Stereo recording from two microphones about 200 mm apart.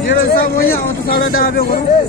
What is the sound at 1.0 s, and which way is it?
Speech, 45° left (ahead or behind).